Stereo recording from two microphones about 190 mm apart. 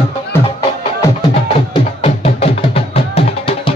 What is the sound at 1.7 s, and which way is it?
Music, 30° left (ahead or behind).